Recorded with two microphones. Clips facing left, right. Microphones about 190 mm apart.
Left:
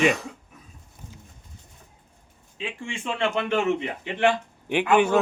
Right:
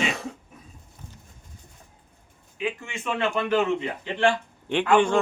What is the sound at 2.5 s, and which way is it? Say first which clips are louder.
Speech: right 3 dB; 30° left (ahead or behind).